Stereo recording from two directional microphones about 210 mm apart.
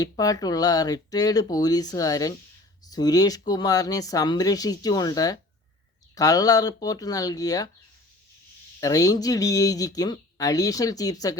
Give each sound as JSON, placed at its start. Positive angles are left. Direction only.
{"t": 0.0, "sound": "speech", "side_deg": 15}
{"t": 8.8, "sound": "speech", "side_deg": 15}